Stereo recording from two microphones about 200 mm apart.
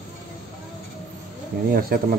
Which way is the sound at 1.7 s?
45° right (ahead or behind).